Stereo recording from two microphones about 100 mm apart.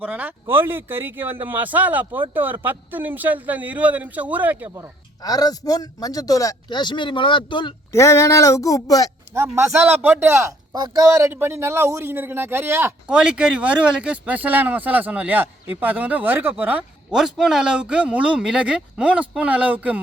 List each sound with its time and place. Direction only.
0.0 s a man's voice: 15° right (ahead or behind)
5.2 s speech: 40° left (ahead or behind)
6.7 s speech: 50° left (ahead or behind)
7.9 s speech: 30° left (ahead or behind)
9.3 s a man's voice: 20° right (ahead or behind)
11.3 s a man's voice: 25° right (ahead or behind)
13.1 s speech: 10° right (ahead or behind)
17.2 s speech: 5° right (ahead or behind)